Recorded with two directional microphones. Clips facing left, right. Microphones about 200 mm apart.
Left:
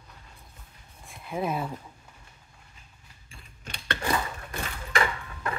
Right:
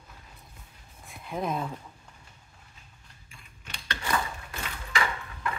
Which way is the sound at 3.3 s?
40° left (ahead or behind).